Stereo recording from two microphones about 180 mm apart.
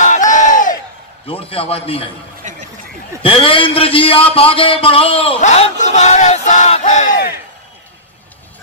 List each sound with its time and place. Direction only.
0.0 s crowd: 45° left (ahead or behind)
1.2 s a man's voice: 30° left (ahead or behind)
2.4 s chatter: 45° right (ahead or behind)
3.2 s a man's voice: 30° left (ahead or behind)